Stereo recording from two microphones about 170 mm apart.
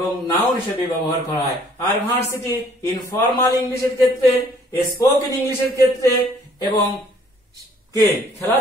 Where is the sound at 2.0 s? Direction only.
15° left (ahead or behind).